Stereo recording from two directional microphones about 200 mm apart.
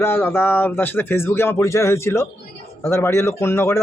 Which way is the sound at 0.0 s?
10° left (ahead or behind).